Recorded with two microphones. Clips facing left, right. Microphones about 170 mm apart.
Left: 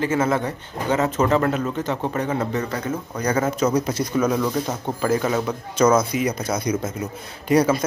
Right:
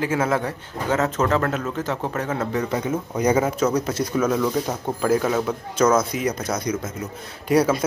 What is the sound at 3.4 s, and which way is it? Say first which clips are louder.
Speech: left 1 dB; centre (ahead or behind).